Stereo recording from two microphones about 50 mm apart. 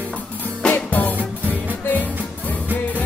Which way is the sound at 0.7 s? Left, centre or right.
Left.